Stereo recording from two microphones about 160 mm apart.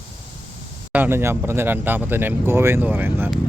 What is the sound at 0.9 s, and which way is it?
Speech, 15° right (ahead or behind).